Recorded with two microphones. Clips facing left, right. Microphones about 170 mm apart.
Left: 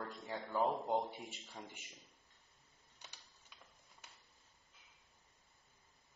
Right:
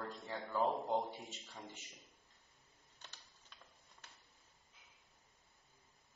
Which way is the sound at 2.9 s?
10° left (ahead or behind).